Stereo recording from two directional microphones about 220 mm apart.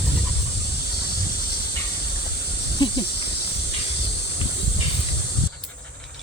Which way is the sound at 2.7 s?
20° left (ahead or behind).